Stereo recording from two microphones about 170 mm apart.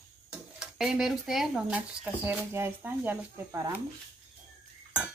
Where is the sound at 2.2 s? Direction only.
15° right (ahead or behind).